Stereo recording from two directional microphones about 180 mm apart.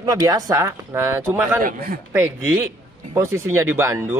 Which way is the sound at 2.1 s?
10° right (ahead or behind).